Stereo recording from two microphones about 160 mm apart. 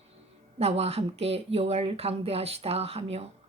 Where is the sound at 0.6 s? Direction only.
40° right (ahead or behind).